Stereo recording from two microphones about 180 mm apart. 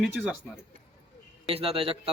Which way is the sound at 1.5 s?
30° right (ahead or behind).